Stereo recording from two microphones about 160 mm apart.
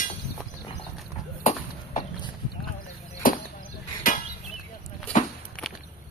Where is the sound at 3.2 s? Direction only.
60° left (ahead or behind).